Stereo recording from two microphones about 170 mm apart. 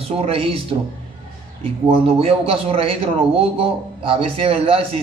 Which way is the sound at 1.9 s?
35° right (ahead or behind).